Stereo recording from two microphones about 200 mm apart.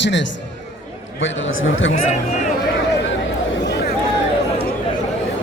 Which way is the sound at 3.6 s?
60° left (ahead or behind).